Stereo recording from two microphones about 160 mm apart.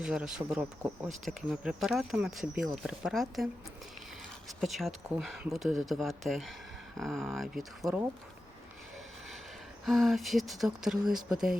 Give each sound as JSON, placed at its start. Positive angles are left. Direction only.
{"t": 0.0, "sound": "speech", "side_deg": -5}
{"t": 1.2, "sound": "speech", "side_deg": 0}
{"t": 4.4, "sound": "speech", "side_deg": 0}
{"t": 9.8, "sound": "speech", "side_deg": 0}